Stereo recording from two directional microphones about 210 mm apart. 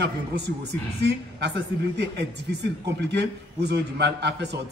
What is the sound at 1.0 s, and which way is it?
A man's voice, 55° right (ahead or behind).